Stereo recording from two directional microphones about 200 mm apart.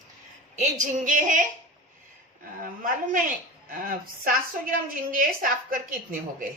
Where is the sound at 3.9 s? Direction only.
45° right (ahead or behind).